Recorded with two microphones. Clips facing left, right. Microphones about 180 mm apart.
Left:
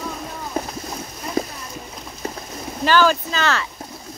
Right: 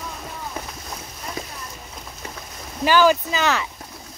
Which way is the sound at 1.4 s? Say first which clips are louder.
Left 12 dB; 40° left (ahead or behind).